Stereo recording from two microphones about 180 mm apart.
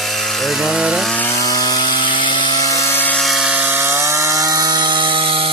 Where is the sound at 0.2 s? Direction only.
Centre (ahead or behind); by 2.0 s 25° left (ahead or behind).